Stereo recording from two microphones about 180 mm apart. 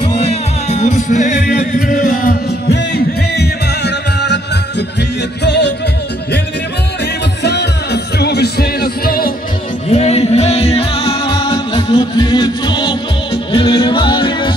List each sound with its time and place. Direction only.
0.0 s music: 35° left (ahead or behind); by 2.3 s 50° left (ahead or behind)
3.3 s music: 70° left (ahead or behind)
7.4 s music: 65° left (ahead or behind)
9.8 s music: 35° left (ahead or behind)